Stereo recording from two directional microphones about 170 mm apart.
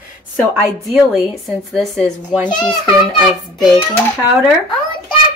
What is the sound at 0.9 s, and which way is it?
A woman's voice, centre (ahead or behind).